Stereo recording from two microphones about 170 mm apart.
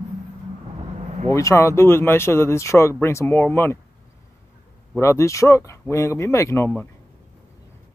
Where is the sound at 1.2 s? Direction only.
20° left (ahead or behind).